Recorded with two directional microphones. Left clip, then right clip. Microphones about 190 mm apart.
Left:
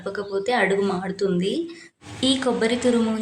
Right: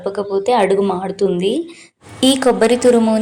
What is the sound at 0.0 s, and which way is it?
Speech, 20° right (ahead or behind).